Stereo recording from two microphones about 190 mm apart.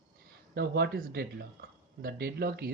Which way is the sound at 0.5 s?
60° right (ahead or behind).